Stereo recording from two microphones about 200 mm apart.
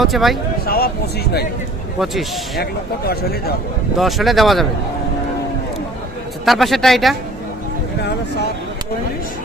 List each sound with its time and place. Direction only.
0.0 s speech: centre (ahead or behind)
0.6 s speech: 50° left (ahead or behind)
3.9 s speech: centre (ahead or behind)
6.4 s speech: centre (ahead or behind)